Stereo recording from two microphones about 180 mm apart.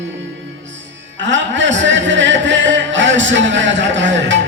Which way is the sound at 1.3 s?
90° right.